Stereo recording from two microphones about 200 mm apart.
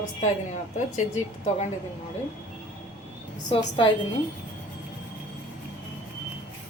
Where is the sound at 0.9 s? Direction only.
35° left (ahead or behind).